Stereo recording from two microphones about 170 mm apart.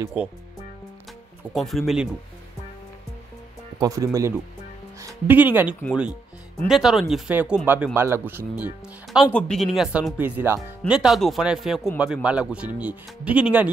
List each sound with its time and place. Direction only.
0.0 s speech: 10° right (ahead or behind)
1.5 s speech: centre (ahead or behind)
3.8 s speech: 20° right (ahead or behind)
9.3 s speech: 5° left (ahead or behind)